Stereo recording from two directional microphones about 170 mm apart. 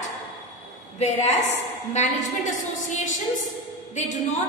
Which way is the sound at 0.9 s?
40° left (ahead or behind).